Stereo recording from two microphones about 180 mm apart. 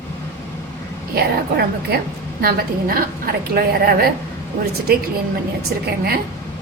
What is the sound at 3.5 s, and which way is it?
Speech, 55° right (ahead or behind).